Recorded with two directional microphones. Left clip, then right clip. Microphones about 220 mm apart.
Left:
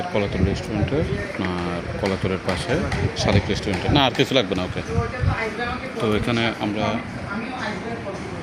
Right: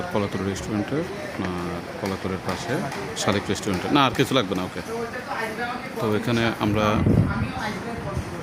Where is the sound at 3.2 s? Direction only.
20° right (ahead or behind).